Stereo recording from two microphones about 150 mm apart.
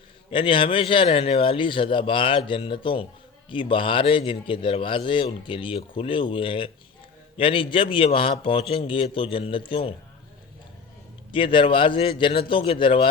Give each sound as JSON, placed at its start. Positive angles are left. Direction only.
{"t": 0.3, "sound": "a man's voice", "side_deg": 35}
{"t": 11.3, "sound": "a man's voice", "side_deg": 35}